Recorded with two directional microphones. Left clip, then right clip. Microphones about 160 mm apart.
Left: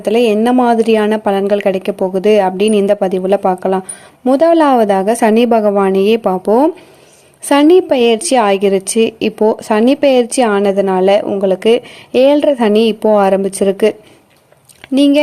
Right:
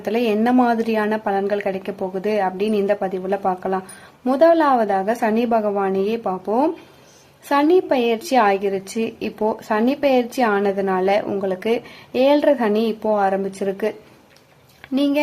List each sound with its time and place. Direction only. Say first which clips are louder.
0.0 s a woman's voice: left 8 dB; 40° left (ahead or behind)
14.9 s a woman's voice: left 9 dB; 40° left (ahead or behind)